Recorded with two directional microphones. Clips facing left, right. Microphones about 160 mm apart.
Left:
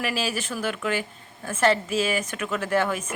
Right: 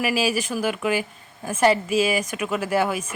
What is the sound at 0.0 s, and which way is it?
Speech, 10° right (ahead or behind).